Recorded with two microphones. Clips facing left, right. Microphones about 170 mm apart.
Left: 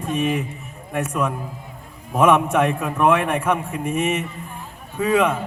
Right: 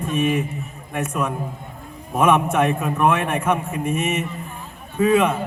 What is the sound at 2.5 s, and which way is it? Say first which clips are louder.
A man's voice: even; 30° left (ahead or behind).